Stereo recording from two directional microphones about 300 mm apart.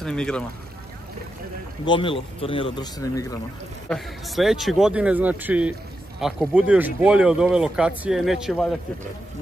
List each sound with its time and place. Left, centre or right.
0.0 s speech: centre
1.9 s speech: centre
3.9 s speech: centre